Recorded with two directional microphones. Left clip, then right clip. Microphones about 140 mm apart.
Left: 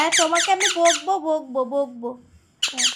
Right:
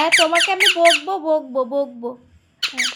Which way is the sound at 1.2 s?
20° right (ahead or behind).